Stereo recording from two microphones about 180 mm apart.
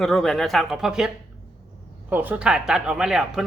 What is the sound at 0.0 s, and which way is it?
Speech, centre (ahead or behind).